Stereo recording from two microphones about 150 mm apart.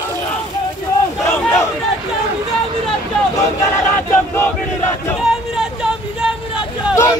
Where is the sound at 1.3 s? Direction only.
15° left (ahead or behind).